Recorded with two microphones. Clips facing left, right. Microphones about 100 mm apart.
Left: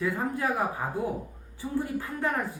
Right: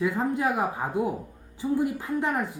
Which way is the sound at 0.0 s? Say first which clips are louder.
Right 3 dB; 20° right (ahead or behind).